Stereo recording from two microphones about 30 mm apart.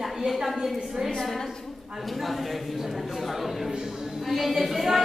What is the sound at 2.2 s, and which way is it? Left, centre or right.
A woman's voice, centre.